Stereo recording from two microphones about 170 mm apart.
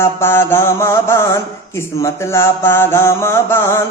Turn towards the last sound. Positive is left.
turn(degrees=15)  # may be behind; listen again after turning